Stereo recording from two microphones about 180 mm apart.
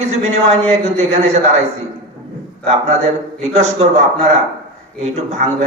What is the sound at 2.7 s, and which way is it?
A man's voice, 35° right (ahead or behind).